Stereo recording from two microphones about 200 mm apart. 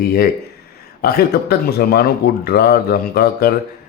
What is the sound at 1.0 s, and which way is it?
Speech, 50° left (ahead or behind).